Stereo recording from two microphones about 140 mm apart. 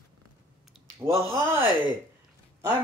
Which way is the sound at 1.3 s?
15° right (ahead or behind).